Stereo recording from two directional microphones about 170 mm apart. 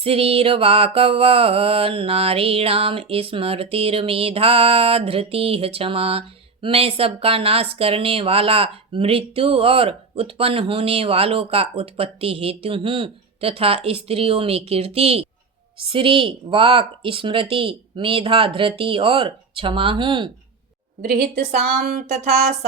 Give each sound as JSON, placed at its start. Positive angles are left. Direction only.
{"t": 0.0, "sound": "mantra", "side_deg": -35}